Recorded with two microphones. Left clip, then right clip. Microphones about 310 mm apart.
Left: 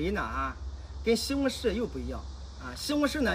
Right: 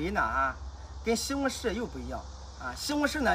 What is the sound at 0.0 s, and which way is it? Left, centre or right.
Speech, centre.